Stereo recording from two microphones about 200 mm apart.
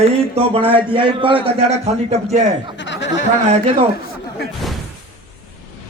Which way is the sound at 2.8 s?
65° left (ahead or behind).